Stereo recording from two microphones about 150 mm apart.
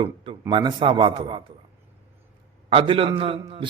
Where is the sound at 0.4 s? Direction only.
30° right (ahead or behind).